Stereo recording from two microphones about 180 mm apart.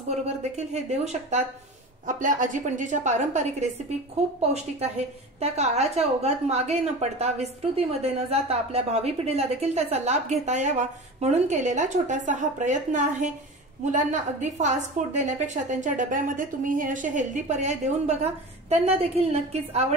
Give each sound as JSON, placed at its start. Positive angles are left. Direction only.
{"t": 0.1, "sound": "a woman's voice", "side_deg": -35}
{"t": 5.4, "sound": "a woman's voice", "side_deg": -35}